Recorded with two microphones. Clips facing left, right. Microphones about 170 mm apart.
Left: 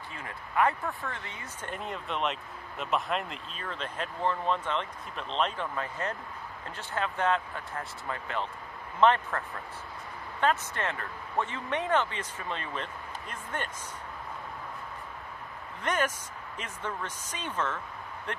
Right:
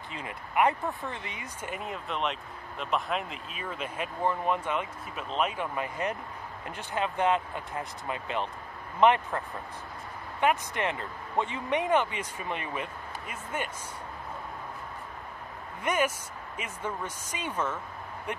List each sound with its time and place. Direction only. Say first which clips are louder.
0.1 s speech: right 2 dB; 20° right (ahead or behind)
10.4 s speech: right 2 dB; 15° right (ahead or behind)
15.8 s speech: right 2 dB; 10° right (ahead or behind)